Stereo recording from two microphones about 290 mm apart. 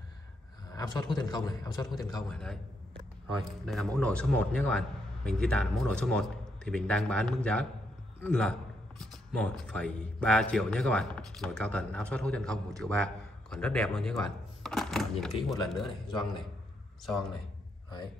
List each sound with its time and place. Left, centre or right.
0.7 s a man's voice: centre
2.2 s speech: centre
3.6 s speech: centre
16.1 s a man's voice: centre
17.0 s speech: centre